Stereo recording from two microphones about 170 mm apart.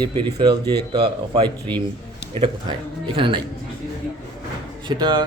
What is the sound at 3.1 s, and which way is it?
Speech, 30° right (ahead or behind).